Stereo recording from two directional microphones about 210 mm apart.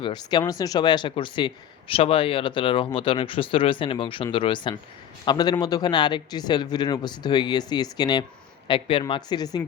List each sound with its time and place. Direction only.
0.0 s speech: 20° left (ahead or behind)